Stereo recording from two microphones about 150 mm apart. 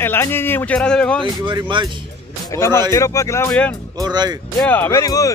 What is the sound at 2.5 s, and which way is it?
Speech, 20° left (ahead or behind).